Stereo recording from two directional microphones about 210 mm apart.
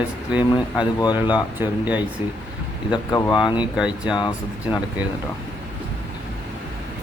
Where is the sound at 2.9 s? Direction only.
20° left (ahead or behind).